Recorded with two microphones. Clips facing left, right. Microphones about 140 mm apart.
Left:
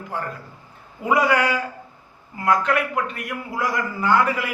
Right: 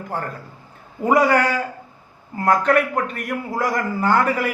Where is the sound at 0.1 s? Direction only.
35° right (ahead or behind).